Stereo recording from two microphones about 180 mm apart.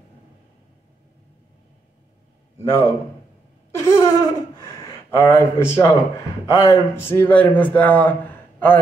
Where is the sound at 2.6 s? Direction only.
15° left (ahead or behind).